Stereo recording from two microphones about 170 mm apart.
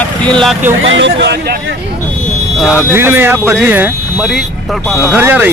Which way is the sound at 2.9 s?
10° right (ahead or behind).